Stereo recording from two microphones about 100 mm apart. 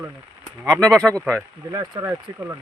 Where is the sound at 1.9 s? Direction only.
30° right (ahead or behind).